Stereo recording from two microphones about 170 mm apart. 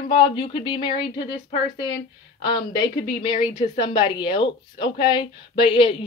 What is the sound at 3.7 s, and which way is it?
A woman's voice, 30° left (ahead or behind).